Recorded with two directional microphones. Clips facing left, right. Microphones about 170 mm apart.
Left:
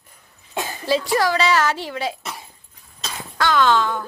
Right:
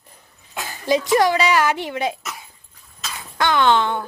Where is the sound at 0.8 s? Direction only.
20° right (ahead or behind).